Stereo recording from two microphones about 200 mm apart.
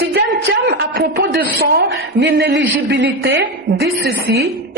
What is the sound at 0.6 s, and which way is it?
A woman's voice, 55° right (ahead or behind).